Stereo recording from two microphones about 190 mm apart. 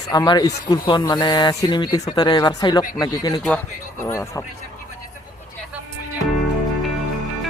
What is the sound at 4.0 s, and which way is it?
Speech, 15° left (ahead or behind).